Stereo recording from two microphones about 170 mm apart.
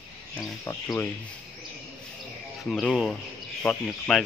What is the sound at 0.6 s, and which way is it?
Speech, 15° left (ahead or behind).